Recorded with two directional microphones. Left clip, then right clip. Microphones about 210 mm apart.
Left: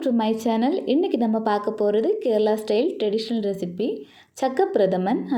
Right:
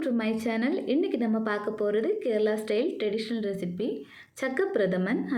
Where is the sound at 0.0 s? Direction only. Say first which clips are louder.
Left 6 dB; 20° left (ahead or behind).